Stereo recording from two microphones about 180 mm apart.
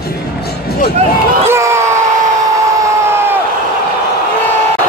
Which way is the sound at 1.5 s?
15° right (ahead or behind).